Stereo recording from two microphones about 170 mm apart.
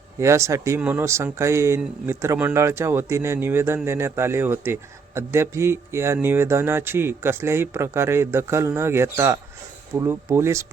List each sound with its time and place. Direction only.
0.2 s speech: 15° right (ahead or behind)